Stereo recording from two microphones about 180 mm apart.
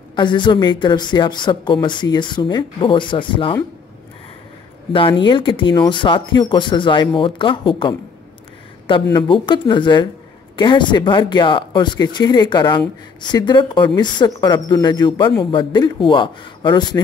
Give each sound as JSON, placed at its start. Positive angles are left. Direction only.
{"t": 0.1, "sound": "speech", "side_deg": 25}
{"t": 4.9, "sound": "speech", "side_deg": 30}
{"t": 9.1, "sound": "speech", "side_deg": 25}